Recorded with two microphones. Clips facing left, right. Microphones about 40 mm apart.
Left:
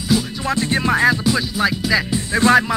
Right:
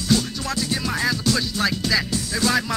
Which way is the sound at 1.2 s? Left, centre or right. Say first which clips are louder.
Left 4 dB; centre.